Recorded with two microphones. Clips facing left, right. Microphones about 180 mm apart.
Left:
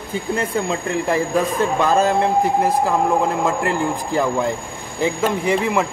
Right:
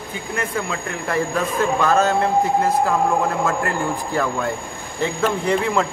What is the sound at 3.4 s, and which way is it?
Speech, 15° left (ahead or behind).